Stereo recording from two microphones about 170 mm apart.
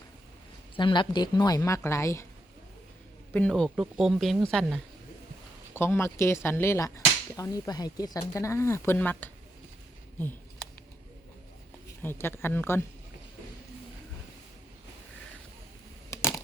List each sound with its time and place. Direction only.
0.8 s a woman's voice: 25° left (ahead or behind)
3.3 s speech: 5° left (ahead or behind)
5.7 s whip: 15° left (ahead or behind)
12.0 s whip: 15° left (ahead or behind)